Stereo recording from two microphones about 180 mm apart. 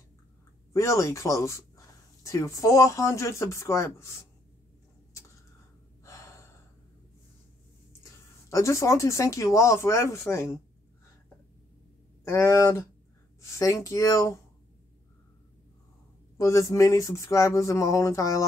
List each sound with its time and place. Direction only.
0.7 s speech: 15° left (ahead or behind)
6.0 s gasp: 15° left (ahead or behind)
8.0 s speech: 20° left (ahead or behind)
12.3 s speech: 15° left (ahead or behind)
16.3 s speech: 15° left (ahead or behind)